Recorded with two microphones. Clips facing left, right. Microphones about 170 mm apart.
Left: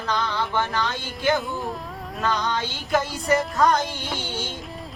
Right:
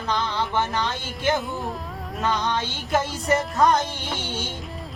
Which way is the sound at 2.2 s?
20° right (ahead or behind).